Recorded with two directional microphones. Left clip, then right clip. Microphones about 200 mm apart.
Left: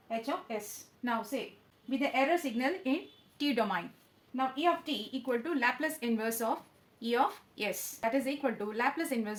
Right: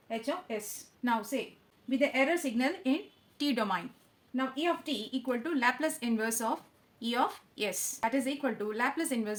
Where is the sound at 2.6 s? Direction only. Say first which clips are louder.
Right 1 dB; 15° right (ahead or behind).